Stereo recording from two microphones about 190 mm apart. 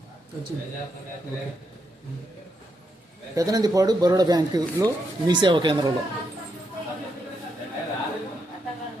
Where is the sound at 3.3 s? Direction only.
20° right (ahead or behind).